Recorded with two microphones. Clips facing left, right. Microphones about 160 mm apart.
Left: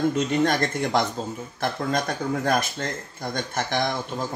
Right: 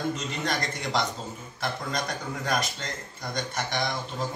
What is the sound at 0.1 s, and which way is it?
Speech, 55° left (ahead or behind).